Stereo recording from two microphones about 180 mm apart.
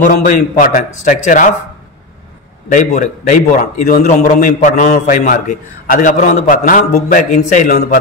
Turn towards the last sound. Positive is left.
turn(degrees=50)  # may be behind; listen again after turning